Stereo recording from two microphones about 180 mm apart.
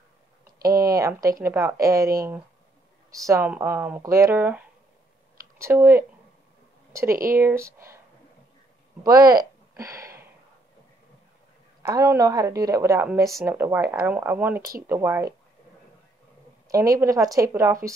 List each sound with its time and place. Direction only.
0.7 s speech: 20° right (ahead or behind)
9.0 s speech: 20° right (ahead or behind)
11.8 s speech: 20° right (ahead or behind)
14.6 s speech: 55° right (ahead or behind)
14.9 s speech: 15° right (ahead or behind)
16.6 s speech: 20° right (ahead or behind)